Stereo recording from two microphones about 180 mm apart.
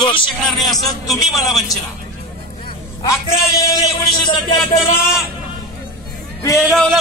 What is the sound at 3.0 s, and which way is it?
Speech, 15° left (ahead or behind).